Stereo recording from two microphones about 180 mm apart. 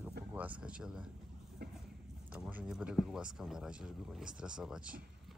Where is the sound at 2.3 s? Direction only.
10° right (ahead or behind).